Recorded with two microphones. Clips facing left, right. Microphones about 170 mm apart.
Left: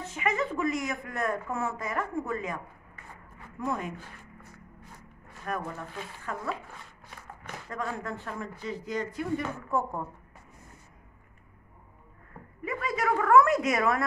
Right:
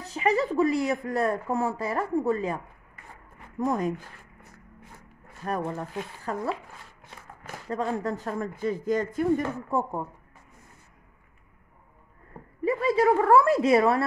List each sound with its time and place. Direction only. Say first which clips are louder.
0.0 s speech: right 5 dB; 35° right (ahead or behind)
5.4 s speech: right 5 dB; 30° right (ahead or behind)
7.7 s speech: right 7 dB; 35° right (ahead or behind)
9.7 s a woman's voice: even; 30° right (ahead or behind)
12.6 s speech: right 8 dB; 30° right (ahead or behind)